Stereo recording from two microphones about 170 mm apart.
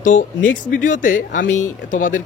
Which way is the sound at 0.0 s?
50° left (ahead or behind).